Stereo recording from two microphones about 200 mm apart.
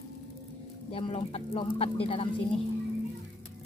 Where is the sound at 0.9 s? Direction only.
30° left (ahead or behind).